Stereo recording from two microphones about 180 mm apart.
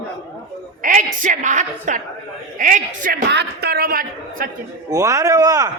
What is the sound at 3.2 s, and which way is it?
A man's voice, 65° right (ahead or behind).